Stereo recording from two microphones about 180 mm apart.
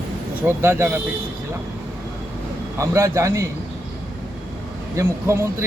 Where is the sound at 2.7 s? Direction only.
15° right (ahead or behind).